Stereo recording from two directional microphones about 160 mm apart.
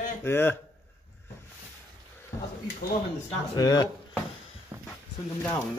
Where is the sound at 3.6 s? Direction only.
20° left (ahead or behind).